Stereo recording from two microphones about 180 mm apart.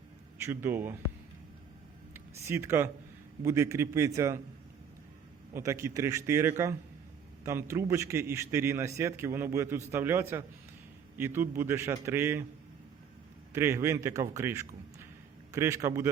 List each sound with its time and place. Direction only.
0.4 s a man's voice: 15° right (ahead or behind)
2.1 s a man's voice: 15° right (ahead or behind)
5.5 s a man's voice: 15° right (ahead or behind)
13.5 s a man's voice: 15° right (ahead or behind)